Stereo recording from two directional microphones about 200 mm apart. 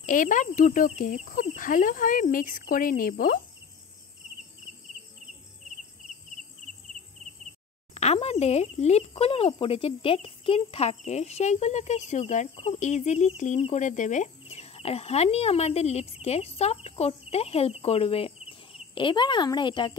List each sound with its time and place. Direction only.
0.0 s speech: 40° left (ahead or behind)
7.9 s speech: 30° left (ahead or behind)